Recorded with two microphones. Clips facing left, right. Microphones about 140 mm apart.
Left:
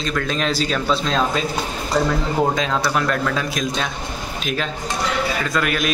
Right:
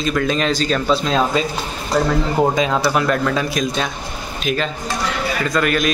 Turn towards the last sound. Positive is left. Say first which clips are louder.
# right 3 dB
turn(degrees=0)  # may be behind; listen again after turning